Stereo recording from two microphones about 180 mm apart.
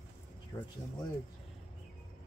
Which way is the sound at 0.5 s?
25° left (ahead or behind).